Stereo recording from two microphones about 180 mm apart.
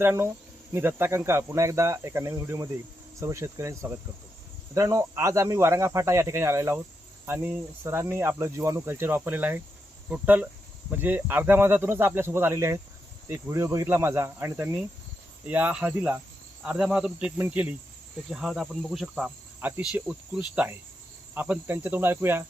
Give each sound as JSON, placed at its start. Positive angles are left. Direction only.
{"t": 0.0, "sound": "speech", "side_deg": -15}
{"t": 18.3, "sound": "cricket", "side_deg": -5}
{"t": 21.3, "sound": "speech", "side_deg": -10}